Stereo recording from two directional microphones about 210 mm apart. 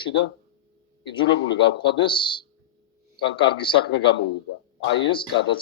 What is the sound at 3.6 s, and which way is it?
Speech, 25° left (ahead or behind).